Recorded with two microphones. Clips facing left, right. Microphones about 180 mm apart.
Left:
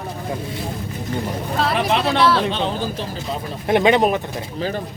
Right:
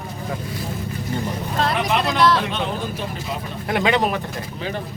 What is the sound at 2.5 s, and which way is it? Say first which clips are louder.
Speech: left 3 dB; 30° left (ahead or behind).